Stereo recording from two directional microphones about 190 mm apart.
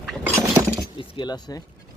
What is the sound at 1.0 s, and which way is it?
Speech, 25° left (ahead or behind).